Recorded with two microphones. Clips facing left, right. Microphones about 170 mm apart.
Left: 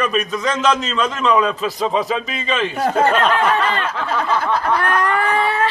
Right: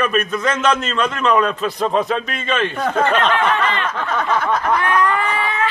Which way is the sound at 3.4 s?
30° left (ahead or behind).